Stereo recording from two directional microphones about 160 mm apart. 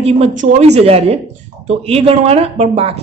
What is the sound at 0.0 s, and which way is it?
A man's voice, 45° right (ahead or behind).